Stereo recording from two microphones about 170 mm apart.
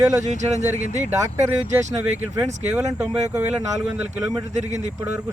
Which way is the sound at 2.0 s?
10° right (ahead or behind).